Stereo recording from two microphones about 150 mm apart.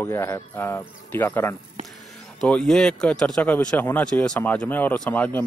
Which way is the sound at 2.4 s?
5° left (ahead or behind).